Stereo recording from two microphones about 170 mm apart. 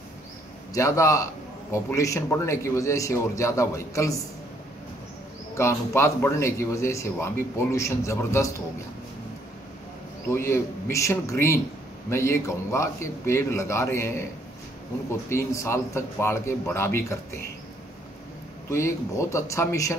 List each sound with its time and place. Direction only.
0.7 s a man's voice: 20° left (ahead or behind)
5.5 s a man's voice: 15° left (ahead or behind)
10.3 s a man's voice: 15° left (ahead or behind)
15.2 s a man's voice: 15° left (ahead or behind)
18.7 s a man's voice: 15° left (ahead or behind)